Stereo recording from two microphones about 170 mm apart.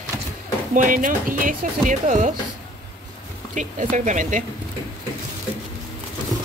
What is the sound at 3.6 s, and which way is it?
Speech, 45° right (ahead or behind).